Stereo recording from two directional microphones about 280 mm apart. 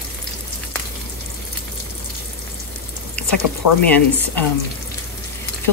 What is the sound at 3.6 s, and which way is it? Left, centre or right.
Speech, left.